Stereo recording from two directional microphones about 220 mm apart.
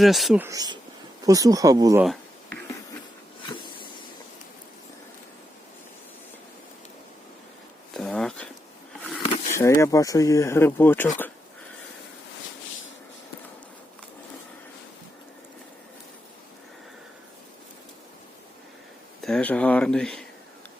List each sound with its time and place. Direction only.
0.0 s speech: centre (ahead or behind)
0.4 s speech: 15° right (ahead or behind)
7.9 s a sound: centre (ahead or behind)
9.5 s speech: 15° left (ahead or behind)
19.2 s speech: 5° left (ahead or behind)